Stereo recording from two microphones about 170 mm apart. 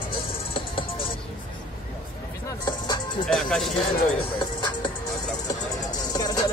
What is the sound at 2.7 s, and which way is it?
Music, 25° left (ahead or behind).